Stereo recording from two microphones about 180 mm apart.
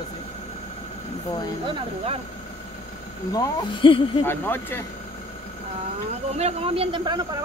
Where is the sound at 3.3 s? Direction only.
20° left (ahead or behind).